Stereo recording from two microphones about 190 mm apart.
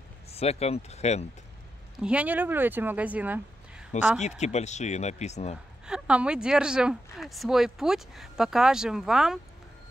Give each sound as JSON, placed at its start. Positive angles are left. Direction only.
{"t": 0.3, "sound": "speech", "side_deg": 35}
{"t": 2.0, "sound": "speech", "side_deg": -5}
{"t": 4.4, "sound": "speech", "side_deg": 35}
{"t": 5.9, "sound": "speech", "side_deg": -5}